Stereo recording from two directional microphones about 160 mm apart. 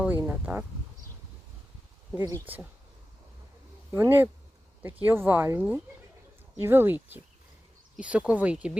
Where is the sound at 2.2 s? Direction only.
15° right (ahead or behind).